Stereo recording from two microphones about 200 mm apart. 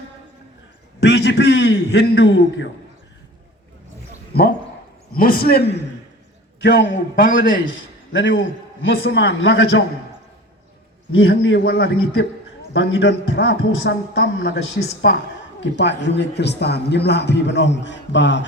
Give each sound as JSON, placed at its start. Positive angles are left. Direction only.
{"t": 0.9, "sound": "a man's voice", "side_deg": 60}
{"t": 4.3, "sound": "a man's voice", "side_deg": 50}
{"t": 6.6, "sound": "a man's voice", "side_deg": 65}
{"t": 7.4, "sound": "a man's voice", "side_deg": 45}
{"t": 8.1, "sound": "a man's voice", "side_deg": 70}
{"t": 11.1, "sound": "a man's voice", "side_deg": 80}
{"t": 11.6, "sound": "a man's voice", "side_deg": 50}
{"t": 12.7, "sound": "a man's voice", "side_deg": 65}